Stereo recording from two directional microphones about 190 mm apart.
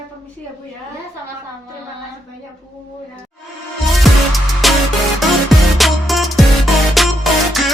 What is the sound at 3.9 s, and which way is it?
Music, centre (ahead or behind).